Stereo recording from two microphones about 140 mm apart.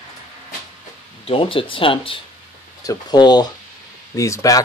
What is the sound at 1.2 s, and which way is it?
Speech, 40° left (ahead or behind).